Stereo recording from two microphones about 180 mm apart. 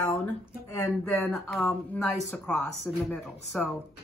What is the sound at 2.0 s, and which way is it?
Speech, 10° left (ahead or behind).